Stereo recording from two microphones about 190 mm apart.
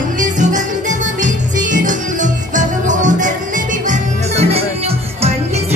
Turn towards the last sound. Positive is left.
turn(degrees=-30)  # may be behind; listen again after turning